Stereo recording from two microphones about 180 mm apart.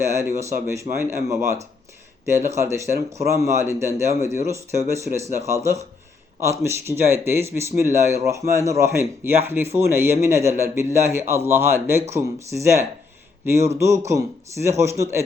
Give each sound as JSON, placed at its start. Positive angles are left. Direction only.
{"t": 0.0, "sound": "speech", "side_deg": -15}
{"t": 2.6, "sound": "speech", "side_deg": -15}